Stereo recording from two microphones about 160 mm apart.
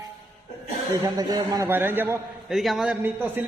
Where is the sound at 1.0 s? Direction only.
25° right (ahead or behind).